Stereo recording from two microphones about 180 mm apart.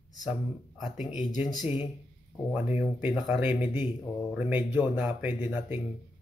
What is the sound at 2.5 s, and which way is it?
Speech, 10° right (ahead or behind).